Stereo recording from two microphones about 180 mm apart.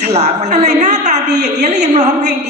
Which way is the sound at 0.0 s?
40° right (ahead or behind).